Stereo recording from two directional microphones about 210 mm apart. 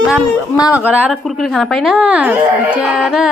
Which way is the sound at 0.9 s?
5° right (ahead or behind).